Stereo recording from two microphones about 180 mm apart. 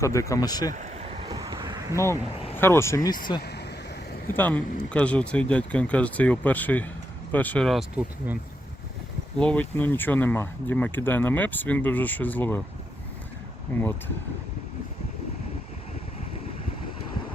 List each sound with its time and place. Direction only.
0.0 s speech: 15° left (ahead or behind)
0.7 s a sound: 40° right (ahead or behind)
1.3 s vehicle: 20° right (ahead or behind)
2.6 s speech: 15° left (ahead or behind)
3.4 s a sound: 65° left (ahead or behind)
4.3 s speech: 10° left (ahead or behind)
9.4 s speech: 10° left (ahead or behind)
13.7 s speech: 10° left (ahead or behind)